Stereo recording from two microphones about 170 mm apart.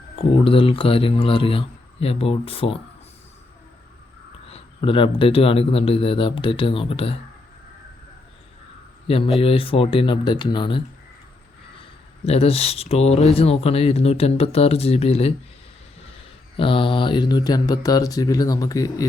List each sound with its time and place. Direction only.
0.2 s speech: 30° left (ahead or behind)
4.4 s speech: 35° left (ahead or behind)
9.0 s speech: 35° left (ahead or behind)
16.6 s speech: 30° left (ahead or behind)